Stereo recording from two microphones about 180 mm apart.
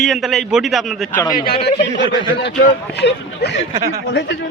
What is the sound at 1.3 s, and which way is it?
Speech, 55° left (ahead or behind).